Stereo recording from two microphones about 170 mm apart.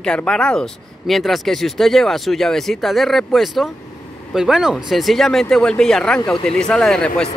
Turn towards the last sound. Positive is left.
turn(degrees=5)  # may be behind; listen again after turning